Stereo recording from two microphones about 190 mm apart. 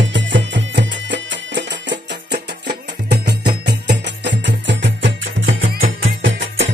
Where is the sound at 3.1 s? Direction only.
60° right (ahead or behind).